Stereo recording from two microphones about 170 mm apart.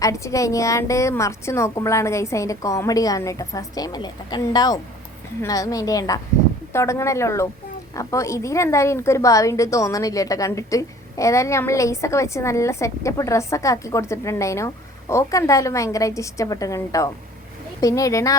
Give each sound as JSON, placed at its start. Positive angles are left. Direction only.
{"t": 0.0, "sound": "a woman's voice", "side_deg": 20}